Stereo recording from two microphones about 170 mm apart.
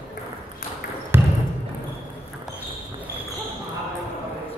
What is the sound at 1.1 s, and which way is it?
Basketball bounce, 15° right (ahead or behind).